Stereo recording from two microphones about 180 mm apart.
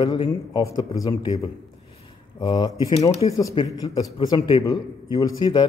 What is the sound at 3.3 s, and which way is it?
A man's voice, 25° left (ahead or behind).